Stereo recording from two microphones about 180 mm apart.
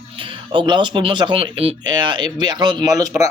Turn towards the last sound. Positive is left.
turn(degrees=-20)  # may be behind; listen again after turning